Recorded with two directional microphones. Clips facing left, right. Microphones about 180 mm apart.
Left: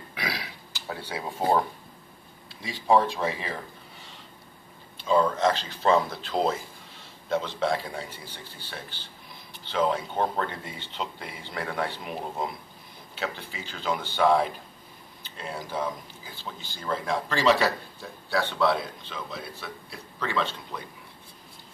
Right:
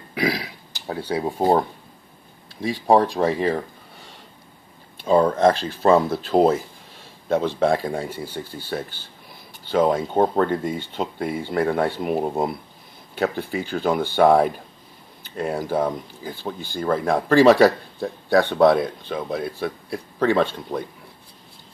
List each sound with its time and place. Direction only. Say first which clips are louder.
0.2 s a sound: right 11 dB; 40° right (ahead or behind)
3.2 s speech: right 10 dB; 50° right (ahead or behind)
4.9 s speech: right 6 dB; 50° right (ahead or behind)